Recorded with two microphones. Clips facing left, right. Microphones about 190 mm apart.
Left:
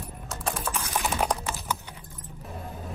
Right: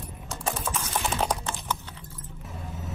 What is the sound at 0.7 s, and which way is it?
Typing, 10° left (ahead or behind).